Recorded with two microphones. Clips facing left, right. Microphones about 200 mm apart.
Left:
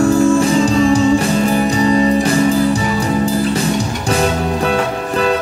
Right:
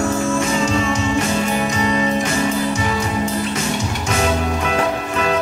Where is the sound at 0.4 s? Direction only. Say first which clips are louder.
Left 6 dB; 35° left (ahead or behind).